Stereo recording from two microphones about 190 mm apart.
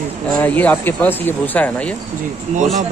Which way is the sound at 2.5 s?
35° right (ahead or behind).